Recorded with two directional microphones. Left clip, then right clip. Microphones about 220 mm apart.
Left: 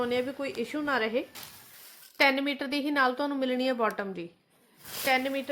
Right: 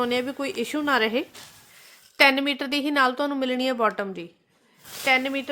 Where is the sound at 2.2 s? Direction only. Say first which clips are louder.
Right 6 dB; 30° right (ahead or behind).